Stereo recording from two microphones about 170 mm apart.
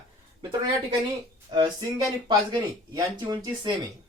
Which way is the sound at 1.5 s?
25° right (ahead or behind).